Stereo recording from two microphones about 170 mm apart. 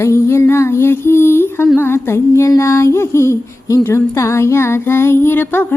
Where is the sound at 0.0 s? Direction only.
15° left (ahead or behind).